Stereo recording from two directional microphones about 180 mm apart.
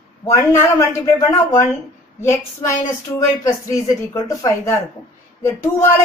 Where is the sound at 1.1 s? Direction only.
15° left (ahead or behind).